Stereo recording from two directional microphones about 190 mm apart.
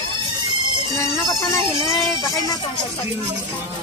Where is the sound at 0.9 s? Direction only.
15° left (ahead or behind).